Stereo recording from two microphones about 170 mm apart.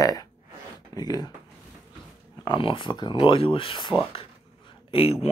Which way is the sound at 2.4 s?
30° left (ahead or behind).